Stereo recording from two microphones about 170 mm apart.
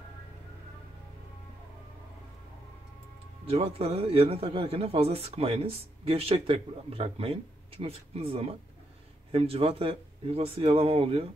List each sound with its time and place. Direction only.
3.4 s a man's voice: 35° right (ahead or behind)